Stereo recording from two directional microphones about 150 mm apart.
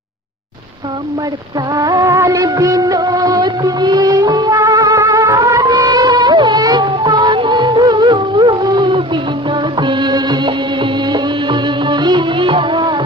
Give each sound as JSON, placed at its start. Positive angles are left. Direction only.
{"t": 1.7, "sound": "music of bollywood", "side_deg": -25}